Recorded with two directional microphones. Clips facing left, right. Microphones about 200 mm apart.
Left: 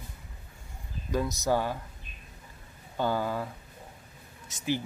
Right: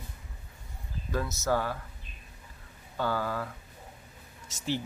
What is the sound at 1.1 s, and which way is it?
Speech, 15° left (ahead or behind).